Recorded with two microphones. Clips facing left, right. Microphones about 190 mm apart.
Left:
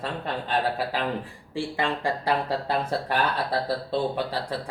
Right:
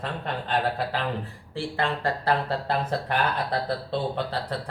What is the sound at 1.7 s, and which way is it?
Speech, 15° left (ahead or behind).